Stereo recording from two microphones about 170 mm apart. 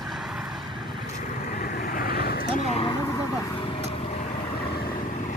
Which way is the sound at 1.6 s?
55° left (ahead or behind).